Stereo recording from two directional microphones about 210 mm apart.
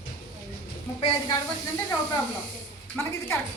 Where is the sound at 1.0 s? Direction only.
20° left (ahead or behind).